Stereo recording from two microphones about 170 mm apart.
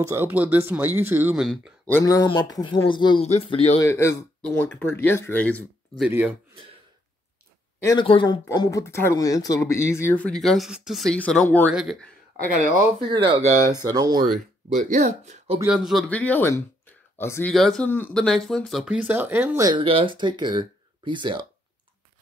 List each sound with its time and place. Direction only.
0.0 s speech: 15° right (ahead or behind)
1.4 s speech: 5° right (ahead or behind)
1.9 s speech: 15° left (ahead or behind); by 3.8 s 30° left (ahead or behind)
3.8 s speech: 15° left (ahead or behind)
6.0 s speech: 10° right (ahead or behind)
7.8 s speech: 25° left (ahead or behind)
8.5 s speech: 20° left (ahead or behind); by 12.1 s centre (ahead or behind)
13.8 s speech: 20° right (ahead or behind)
14.7 s speech: 45° right (ahead or behind)
15.6 s speech: 5° right (ahead or behind); by 17.6 s 10° left (ahead or behind)
17.6 s speech: centre (ahead or behind)
17.8 s speech: 10° left (ahead or behind); by 19.7 s 15° right (ahead or behind)
19.7 s speech: 30° right (ahead or behind)